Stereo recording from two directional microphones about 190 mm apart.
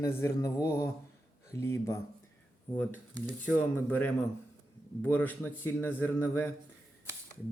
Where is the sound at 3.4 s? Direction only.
10° left (ahead or behind).